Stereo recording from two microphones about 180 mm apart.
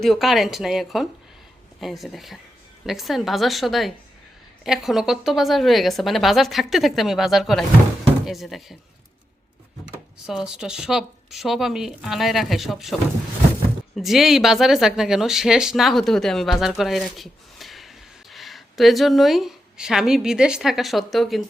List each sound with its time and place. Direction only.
0.0 s speech: centre (ahead or behind)
10.2 s speech: 5° right (ahead or behind)